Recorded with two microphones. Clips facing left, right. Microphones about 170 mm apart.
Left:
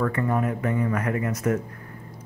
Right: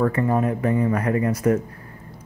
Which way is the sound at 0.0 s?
30° right (ahead or behind).